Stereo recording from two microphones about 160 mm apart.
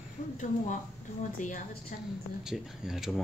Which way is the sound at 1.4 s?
55° left (ahead or behind).